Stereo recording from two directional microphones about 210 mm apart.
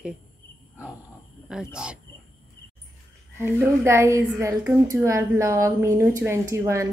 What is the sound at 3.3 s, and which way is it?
A woman's voice, 10° right (ahead or behind).